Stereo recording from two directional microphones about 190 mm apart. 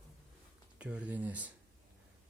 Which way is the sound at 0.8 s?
5° right (ahead or behind).